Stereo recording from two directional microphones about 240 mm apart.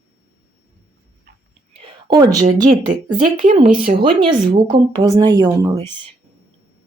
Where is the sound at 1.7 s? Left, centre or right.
Centre.